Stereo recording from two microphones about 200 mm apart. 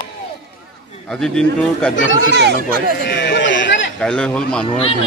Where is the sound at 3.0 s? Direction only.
60° left (ahead or behind).